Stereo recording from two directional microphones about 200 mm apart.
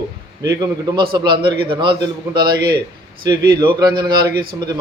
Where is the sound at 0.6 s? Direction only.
20° right (ahead or behind).